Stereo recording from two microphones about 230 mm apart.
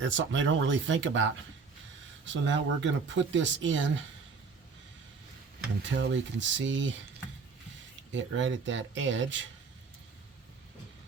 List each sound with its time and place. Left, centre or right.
0.0 s speech: right
5.9 s speech: right
8.1 s speech: right